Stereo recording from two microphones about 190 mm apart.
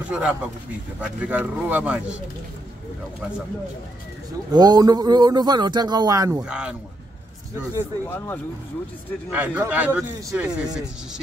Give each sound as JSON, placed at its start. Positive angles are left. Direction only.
{"t": 0.1, "sound": "speech", "side_deg": -5}
{"t": 4.5, "sound": "a man's voice", "side_deg": -20}
{"t": 6.4, "sound": "speech", "side_deg": -5}
{"t": 8.0, "sound": "speech", "side_deg": 10}
{"t": 9.3, "sound": "speech", "side_deg": -10}